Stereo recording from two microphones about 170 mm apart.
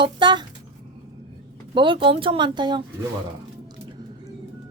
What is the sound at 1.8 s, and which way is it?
Speech, 30° right (ahead or behind).